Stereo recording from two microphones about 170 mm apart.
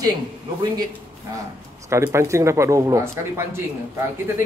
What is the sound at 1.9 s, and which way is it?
A man's voice, 15° right (ahead or behind).